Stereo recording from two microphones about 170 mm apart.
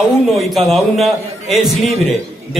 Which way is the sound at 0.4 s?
Centre (ahead or behind).